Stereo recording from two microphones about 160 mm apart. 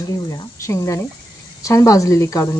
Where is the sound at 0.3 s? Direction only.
20° left (ahead or behind).